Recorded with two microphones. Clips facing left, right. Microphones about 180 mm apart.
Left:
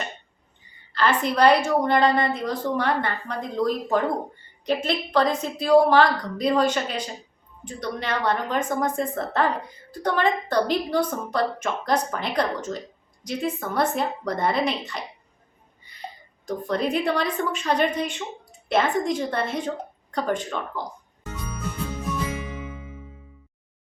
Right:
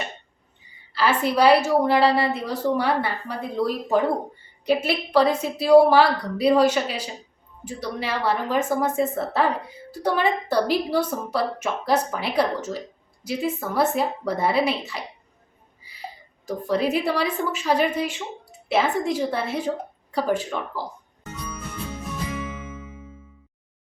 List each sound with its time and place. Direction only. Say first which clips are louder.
0.9 s a woman's voice: right 1 dB; 5° right (ahead or behind)
15.8 s a sound: right 1 dB; 5° right (ahead or behind)
16.5 s a woman's voice: right 2 dB; 5° right (ahead or behind)